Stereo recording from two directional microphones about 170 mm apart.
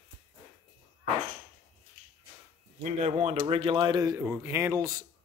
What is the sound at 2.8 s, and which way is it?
Speech, 40° right (ahead or behind).